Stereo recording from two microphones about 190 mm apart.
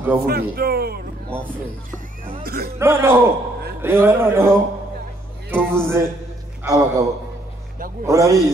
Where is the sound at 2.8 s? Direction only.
15° right (ahead or behind).